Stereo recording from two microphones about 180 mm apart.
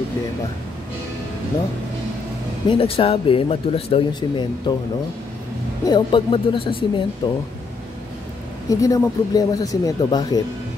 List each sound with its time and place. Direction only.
2.7 s speech: 30° left (ahead or behind)
5.9 s speech: 25° left (ahead or behind)
8.6 s speech: 20° left (ahead or behind)